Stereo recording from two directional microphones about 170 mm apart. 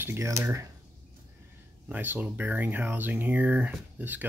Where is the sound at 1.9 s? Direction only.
10° right (ahead or behind).